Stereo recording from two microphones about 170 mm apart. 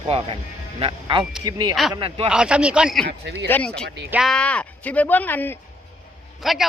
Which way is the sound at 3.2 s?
90° right.